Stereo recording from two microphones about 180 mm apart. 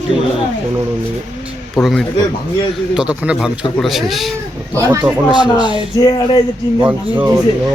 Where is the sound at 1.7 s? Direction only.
Centre (ahead or behind).